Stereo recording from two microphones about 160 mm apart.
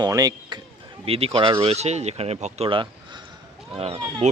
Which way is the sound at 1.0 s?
35° right (ahead or behind).